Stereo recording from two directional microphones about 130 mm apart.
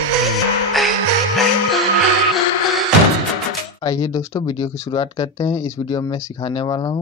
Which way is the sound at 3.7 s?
25° left (ahead or behind).